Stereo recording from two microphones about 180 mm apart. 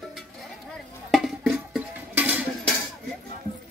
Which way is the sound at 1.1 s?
Centre (ahead or behind).